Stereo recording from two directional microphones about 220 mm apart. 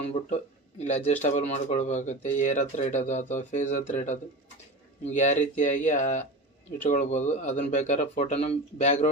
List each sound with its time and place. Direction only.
0.9 s speech: 35° left (ahead or behind)